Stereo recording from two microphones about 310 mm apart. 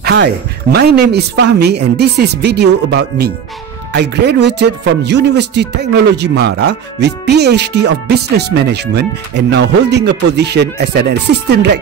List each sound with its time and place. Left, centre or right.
0.0 s speech: right